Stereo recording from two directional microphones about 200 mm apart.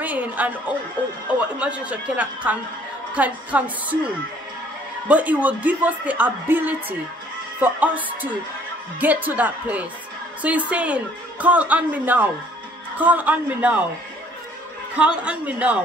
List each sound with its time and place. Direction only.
0.0 s a woman's voice: 10° right (ahead or behind)
15.2 s a woman's voice: 5° right (ahead or behind)